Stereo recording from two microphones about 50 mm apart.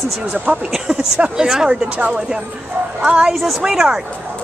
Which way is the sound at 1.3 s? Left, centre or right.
Centre.